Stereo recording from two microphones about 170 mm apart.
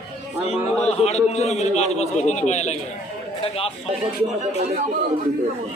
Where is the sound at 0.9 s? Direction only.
40° left (ahead or behind).